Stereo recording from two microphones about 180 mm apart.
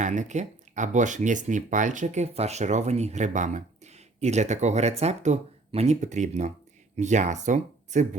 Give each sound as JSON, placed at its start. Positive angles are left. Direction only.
{"t": 0.0, "sound": "speech", "side_deg": -40}